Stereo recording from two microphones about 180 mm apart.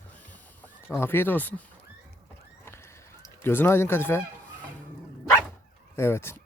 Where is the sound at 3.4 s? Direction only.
10° left (ahead or behind).